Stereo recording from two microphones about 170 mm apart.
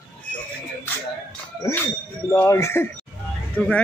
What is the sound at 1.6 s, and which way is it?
A man's voice, 20° left (ahead or behind).